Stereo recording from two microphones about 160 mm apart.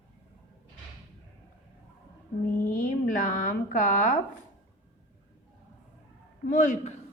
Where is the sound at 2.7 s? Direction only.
55° left (ahead or behind).